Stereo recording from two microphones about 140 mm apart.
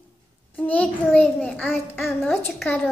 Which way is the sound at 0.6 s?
10° left (ahead or behind).